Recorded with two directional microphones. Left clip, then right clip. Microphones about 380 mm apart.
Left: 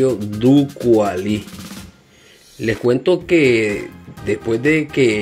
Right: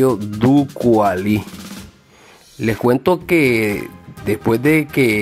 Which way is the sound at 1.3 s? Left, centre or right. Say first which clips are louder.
Right 3 dB; centre.